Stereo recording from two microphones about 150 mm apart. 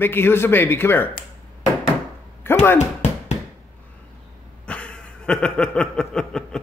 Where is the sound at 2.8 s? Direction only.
50° left (ahead or behind).